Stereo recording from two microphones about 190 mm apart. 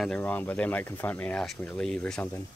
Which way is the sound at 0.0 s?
5° left (ahead or behind).